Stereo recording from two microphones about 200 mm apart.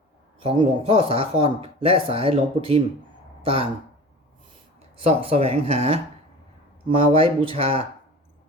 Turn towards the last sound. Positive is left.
turn(degrees=-30)  # may be behind; listen again after turning